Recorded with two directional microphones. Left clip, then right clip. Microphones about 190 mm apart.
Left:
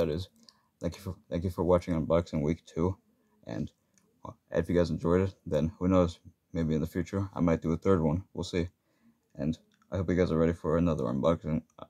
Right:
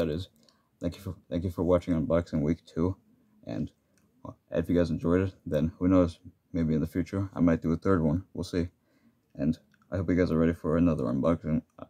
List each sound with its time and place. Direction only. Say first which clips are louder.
0.0 s speech: even; 20° right (ahead or behind)